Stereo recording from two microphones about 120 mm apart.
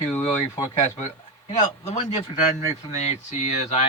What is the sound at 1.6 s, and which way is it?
Speech, 75° left (ahead or behind).